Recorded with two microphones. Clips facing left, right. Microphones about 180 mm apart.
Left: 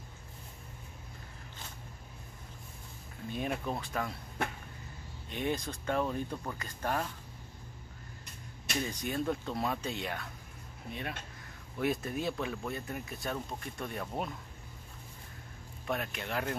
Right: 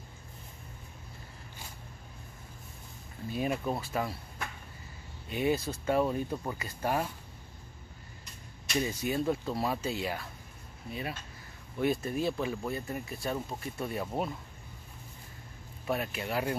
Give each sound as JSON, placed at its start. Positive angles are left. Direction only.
{"t": 3.3, "sound": "speech", "side_deg": -5}
{"t": 5.3, "sound": "speech", "side_deg": -5}
{"t": 9.0, "sound": "speech", "side_deg": -5}
{"t": 15.9, "sound": "speech", "side_deg": -5}